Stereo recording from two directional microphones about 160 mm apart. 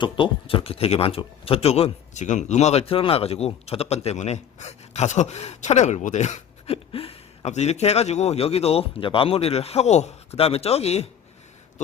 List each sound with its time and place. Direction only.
0.0 s speech: 35° left (ahead or behind)